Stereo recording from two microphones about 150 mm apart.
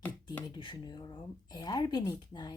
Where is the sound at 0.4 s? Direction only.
30° left (ahead or behind).